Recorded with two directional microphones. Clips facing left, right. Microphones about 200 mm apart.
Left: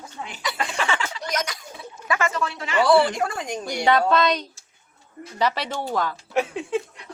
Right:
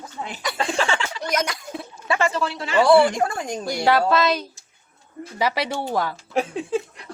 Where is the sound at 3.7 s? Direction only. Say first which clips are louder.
Right 1 dB; 5° right (ahead or behind).